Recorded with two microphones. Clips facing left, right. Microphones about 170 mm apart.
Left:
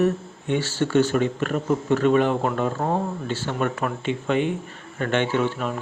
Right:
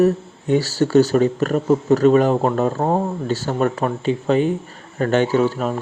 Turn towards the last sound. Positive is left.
turn(degrees=-40)  # may be behind; listen again after turning